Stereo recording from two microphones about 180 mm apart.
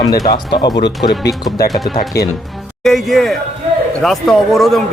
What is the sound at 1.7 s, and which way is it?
A man's voice, centre (ahead or behind).